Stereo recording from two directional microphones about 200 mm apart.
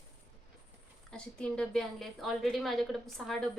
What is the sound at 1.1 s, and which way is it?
A woman's voice, 5° left (ahead or behind).